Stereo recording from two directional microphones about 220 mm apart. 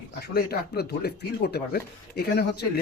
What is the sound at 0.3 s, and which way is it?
Speech, 45° left (ahead or behind).